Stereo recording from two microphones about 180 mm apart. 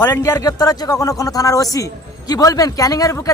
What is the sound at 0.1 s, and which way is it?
A man's voice, 15° left (ahead or behind).